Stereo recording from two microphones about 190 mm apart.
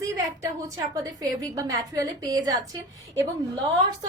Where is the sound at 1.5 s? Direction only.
20° right (ahead or behind).